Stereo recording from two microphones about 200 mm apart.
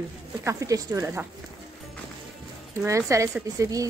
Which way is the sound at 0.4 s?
15° right (ahead or behind).